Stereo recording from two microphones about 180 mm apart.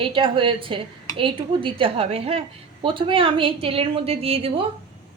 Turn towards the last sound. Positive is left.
turn(degrees=-30)  # may be behind; listen again after turning